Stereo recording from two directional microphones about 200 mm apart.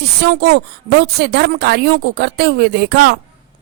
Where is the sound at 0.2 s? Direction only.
55° right (ahead or behind).